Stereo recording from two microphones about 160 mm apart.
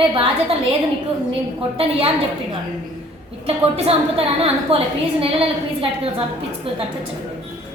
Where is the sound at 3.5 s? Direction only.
35° right (ahead or behind).